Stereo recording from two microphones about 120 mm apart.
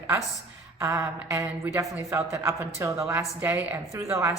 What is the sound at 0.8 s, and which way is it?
Speech, 25° right (ahead or behind).